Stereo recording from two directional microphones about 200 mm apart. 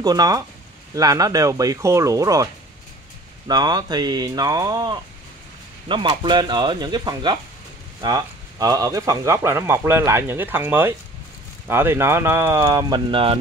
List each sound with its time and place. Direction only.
0.0 s speech: 20° right (ahead or behind)